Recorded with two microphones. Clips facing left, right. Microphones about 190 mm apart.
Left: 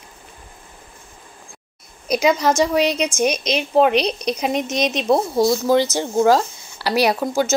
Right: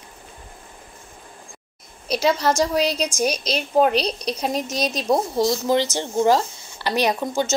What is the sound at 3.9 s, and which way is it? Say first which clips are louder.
A woman's voice: left 3 dB; 35° right (ahead or behind).